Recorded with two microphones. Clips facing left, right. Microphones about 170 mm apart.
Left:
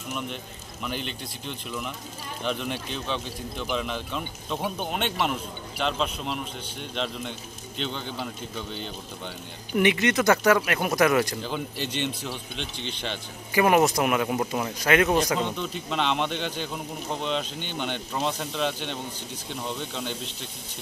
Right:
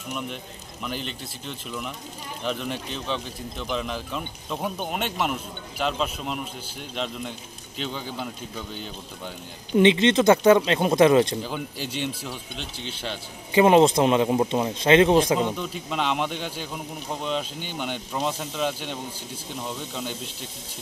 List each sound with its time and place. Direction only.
0.1 s speech: centre (ahead or behind)
9.8 s speech: 25° right (ahead or behind)
11.4 s speech: 5° right (ahead or behind)
13.5 s speech: 25° right (ahead or behind)
15.3 s speech: 5° right (ahead or behind)